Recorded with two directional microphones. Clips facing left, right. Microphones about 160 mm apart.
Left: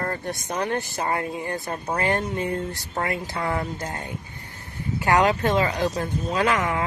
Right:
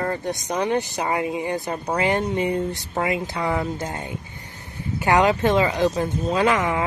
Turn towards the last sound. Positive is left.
turn(degrees=-20)  # may be behind; listen again after turning